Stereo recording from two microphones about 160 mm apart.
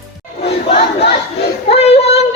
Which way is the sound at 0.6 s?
35° left (ahead or behind).